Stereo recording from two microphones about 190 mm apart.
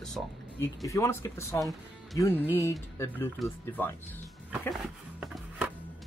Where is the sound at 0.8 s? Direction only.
15° left (ahead or behind).